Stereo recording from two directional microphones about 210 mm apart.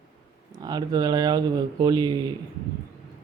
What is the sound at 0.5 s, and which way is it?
Speech, 20° right (ahead or behind).